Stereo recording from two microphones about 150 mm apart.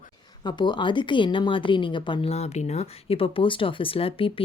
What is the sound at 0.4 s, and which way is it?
A woman's voice, 30° left (ahead or behind).